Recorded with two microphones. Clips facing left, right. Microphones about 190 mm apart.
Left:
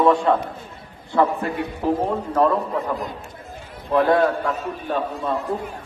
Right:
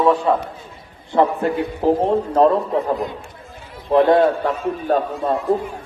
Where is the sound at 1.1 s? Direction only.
25° right (ahead or behind).